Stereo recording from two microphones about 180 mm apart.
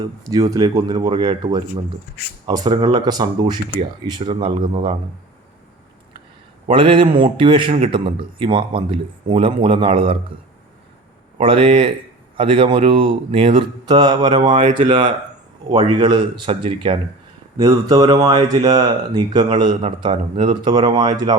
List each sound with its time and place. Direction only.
0.3 s speech: 20° right (ahead or behind)
6.7 s speech: 30° right (ahead or behind)
11.3 s speech: 30° right (ahead or behind)
17.6 s speech: 20° right (ahead or behind)